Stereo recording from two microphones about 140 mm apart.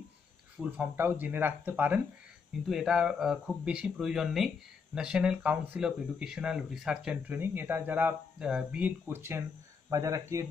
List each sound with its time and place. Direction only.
0.6 s speech: 10° right (ahead or behind)
2.7 s speech: 5° right (ahead or behind); by 10.4 s 25° right (ahead or behind)